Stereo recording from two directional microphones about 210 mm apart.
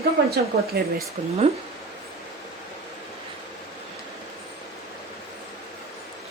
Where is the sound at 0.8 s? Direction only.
45° right (ahead or behind).